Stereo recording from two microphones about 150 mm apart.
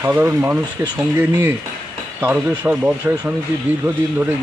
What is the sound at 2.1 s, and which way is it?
Speech, 10° right (ahead or behind).